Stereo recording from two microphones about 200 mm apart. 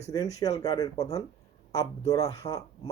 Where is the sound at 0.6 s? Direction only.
15° left (ahead or behind).